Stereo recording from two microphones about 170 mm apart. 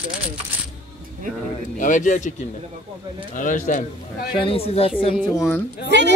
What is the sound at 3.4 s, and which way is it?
Speech, 50° left (ahead or behind).